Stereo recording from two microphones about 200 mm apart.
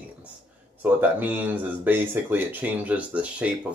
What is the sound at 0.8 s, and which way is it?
Speech, 10° right (ahead or behind).